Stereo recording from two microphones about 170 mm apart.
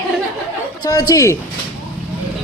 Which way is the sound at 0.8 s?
20° left (ahead or behind).